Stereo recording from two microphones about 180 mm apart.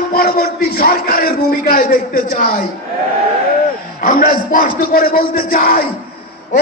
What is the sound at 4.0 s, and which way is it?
Speech, 50° left (ahead or behind).